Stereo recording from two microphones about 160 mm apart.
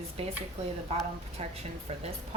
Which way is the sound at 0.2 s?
40° right (ahead or behind).